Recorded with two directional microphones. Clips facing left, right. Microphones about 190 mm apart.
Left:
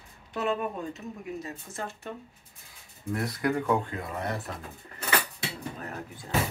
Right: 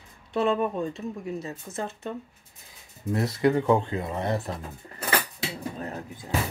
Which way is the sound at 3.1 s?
25° right (ahead or behind).